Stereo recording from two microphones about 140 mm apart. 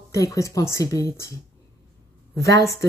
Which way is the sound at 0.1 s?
25° left (ahead or behind).